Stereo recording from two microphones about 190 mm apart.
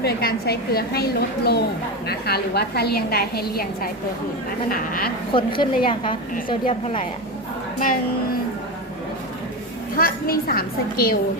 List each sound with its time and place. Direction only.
0.0 s a woman's voice: 55° left (ahead or behind)
4.7 s a woman's voice: 50° left (ahead or behind)
5.3 s a woman's voice: 25° left (ahead or behind)
10.0 s a woman's voice: 50° left (ahead or behind)